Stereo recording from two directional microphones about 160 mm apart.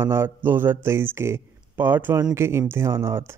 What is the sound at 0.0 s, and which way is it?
Speech, 15° right (ahead or behind).